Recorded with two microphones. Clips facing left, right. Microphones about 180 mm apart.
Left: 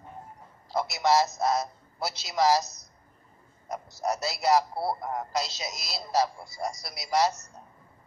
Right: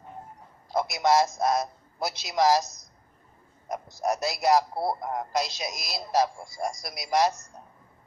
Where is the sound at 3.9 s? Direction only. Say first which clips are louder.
Right 2 dB; 50° right (ahead or behind).